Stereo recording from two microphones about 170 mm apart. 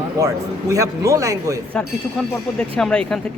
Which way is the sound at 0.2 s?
20° right (ahead or behind).